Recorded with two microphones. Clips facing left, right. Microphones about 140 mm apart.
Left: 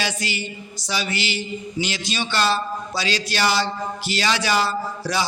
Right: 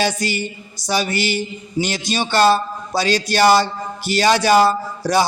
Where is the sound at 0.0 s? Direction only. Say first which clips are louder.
Right 7 dB; 45° right (ahead or behind).